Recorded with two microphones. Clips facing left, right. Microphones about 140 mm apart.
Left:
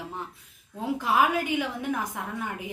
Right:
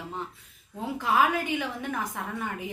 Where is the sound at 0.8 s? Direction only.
15° left (ahead or behind).